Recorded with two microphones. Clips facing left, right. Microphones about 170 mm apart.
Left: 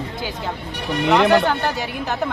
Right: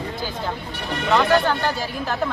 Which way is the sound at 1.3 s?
20° left (ahead or behind).